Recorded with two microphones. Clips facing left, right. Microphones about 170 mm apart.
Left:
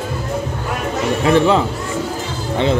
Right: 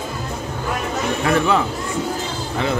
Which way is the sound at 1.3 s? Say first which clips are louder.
Left 5 dB; 25° left (ahead or behind).